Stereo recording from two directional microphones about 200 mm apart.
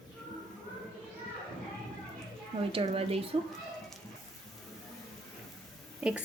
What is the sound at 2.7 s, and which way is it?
Speech, 30° right (ahead or behind).